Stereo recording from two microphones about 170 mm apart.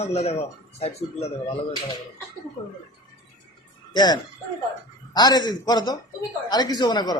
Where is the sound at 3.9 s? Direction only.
25° left (ahead or behind).